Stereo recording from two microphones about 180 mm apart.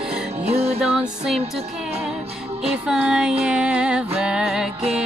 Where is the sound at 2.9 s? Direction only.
5° right (ahead or behind).